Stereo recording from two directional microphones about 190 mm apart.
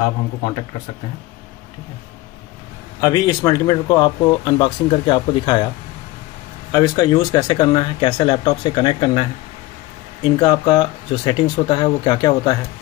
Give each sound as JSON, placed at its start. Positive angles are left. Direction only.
{"t": 3.0, "sound": "speech", "side_deg": 20}
{"t": 6.7, "sound": "speech", "side_deg": 20}
{"t": 10.4, "sound": "speech", "side_deg": 25}